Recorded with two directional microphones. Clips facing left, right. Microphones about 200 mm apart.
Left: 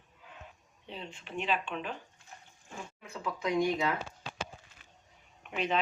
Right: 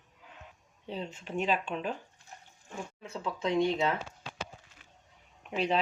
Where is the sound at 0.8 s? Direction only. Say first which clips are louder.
Right 6 dB; 40° right (ahead or behind).